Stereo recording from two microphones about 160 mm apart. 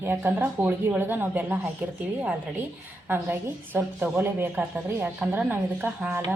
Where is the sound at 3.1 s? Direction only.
10° right (ahead or behind).